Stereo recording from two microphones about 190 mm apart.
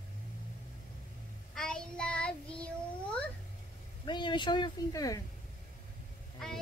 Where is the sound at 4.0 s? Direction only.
25° left (ahead or behind).